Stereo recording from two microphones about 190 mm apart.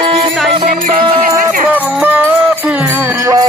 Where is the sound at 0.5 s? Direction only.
40° right (ahead or behind).